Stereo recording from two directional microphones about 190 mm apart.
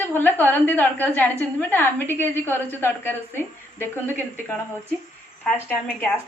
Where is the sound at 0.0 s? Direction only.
10° left (ahead or behind).